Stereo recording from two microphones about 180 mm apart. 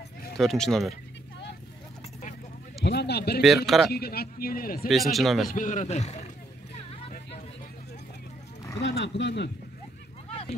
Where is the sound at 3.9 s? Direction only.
60° left (ahead or behind).